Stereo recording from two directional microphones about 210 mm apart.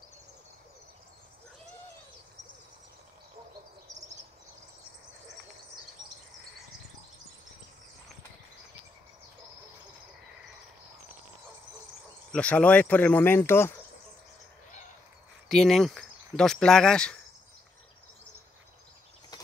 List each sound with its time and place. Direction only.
12.3 s speech: 5° left (ahead or behind)
15.4 s speech: centre (ahead or behind)
19.3 s a sound: 20° left (ahead or behind)